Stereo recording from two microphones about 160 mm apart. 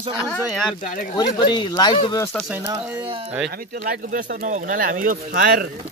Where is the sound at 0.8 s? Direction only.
60° left (ahead or behind).